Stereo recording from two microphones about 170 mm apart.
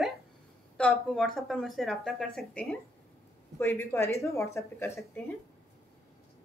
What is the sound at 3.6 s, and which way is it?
Speech, 15° left (ahead or behind).